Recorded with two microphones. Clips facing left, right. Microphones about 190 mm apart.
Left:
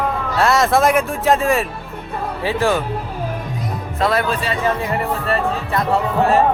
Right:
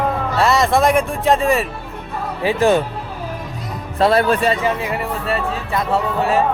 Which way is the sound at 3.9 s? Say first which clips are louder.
Right 4 dB; 30° right (ahead or behind).